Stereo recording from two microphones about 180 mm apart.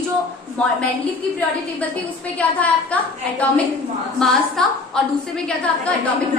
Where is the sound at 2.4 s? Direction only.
10° left (ahead or behind).